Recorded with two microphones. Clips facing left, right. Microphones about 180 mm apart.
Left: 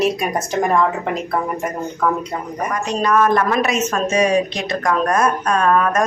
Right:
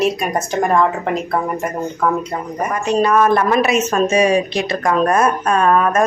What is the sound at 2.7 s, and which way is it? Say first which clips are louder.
A woman's voice: right 3 dB; 10° right (ahead or behind).